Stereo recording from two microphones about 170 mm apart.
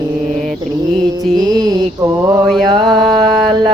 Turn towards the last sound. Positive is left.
turn(degrees=-25)  # may be behind; listen again after turning